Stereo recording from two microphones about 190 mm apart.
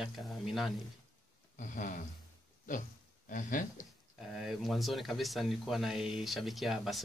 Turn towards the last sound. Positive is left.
turn(degrees=0)  # may be behind; listen again after turning